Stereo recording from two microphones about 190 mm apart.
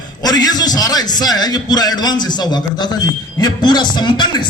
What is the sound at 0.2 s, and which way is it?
A man's voice, 20° left (ahead or behind).